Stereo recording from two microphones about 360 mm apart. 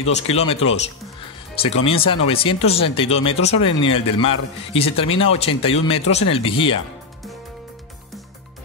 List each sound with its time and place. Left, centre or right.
0.0 s speech: centre